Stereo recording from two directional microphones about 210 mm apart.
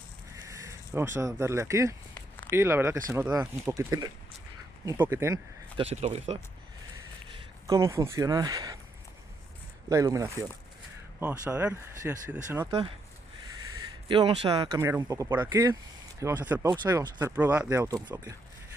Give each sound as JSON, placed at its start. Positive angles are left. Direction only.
{"t": 0.3, "sound": "speech", "side_deg": -15}
{"t": 2.1, "sound": "a sound", "side_deg": 10}
{"t": 2.5, "sound": "speech", "side_deg": -10}
{"t": 5.8, "sound": "speech", "side_deg": -30}
{"t": 7.3, "sound": "speech", "side_deg": -15}
{"t": 9.8, "sound": "speech", "side_deg": -15}
{"t": 13.7, "sound": "speech", "side_deg": -25}
{"t": 14.8, "sound": "speech", "side_deg": -15}